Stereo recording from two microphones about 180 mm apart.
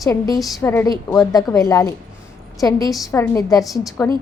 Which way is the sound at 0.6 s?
15° left (ahead or behind).